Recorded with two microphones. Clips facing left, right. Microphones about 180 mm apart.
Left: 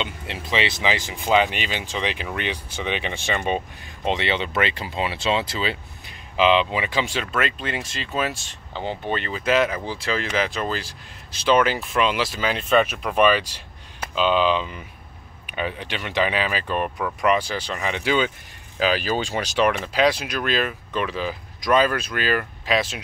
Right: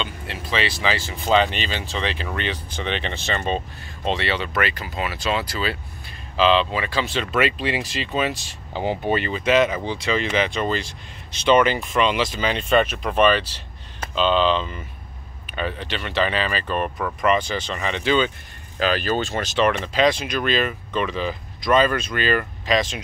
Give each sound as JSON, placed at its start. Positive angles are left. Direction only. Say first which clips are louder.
{"t": 0.0, "sound": "speech", "louder": "even", "side_deg": 20}
{"t": 7.3, "sound": "speech", "louder": "right 5 dB", "side_deg": -5}
{"t": 8.7, "sound": "speech", "louder": "right 4 dB", "side_deg": -10}
{"t": 9.3, "sound": "speech", "louder": "right 1 dB", "side_deg": 0}